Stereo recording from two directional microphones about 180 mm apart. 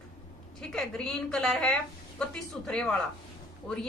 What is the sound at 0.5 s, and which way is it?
A woman's voice, centre (ahead or behind).